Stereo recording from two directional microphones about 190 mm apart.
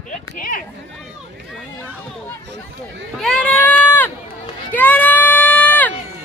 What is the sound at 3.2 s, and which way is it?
Sheep, 5° left (ahead or behind).